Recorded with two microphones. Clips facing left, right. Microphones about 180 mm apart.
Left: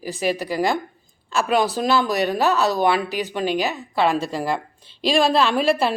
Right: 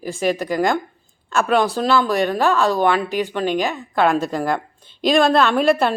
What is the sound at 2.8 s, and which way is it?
A woman's voice, 10° left (ahead or behind).